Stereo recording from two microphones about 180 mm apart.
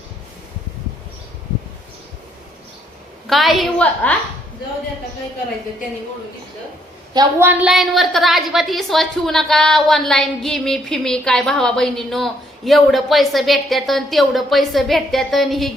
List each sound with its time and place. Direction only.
3.2 s a woman's voice: centre (ahead or behind)
7.1 s a woman's voice: 20° right (ahead or behind)
7.4 s a woman's voice: 5° right (ahead or behind)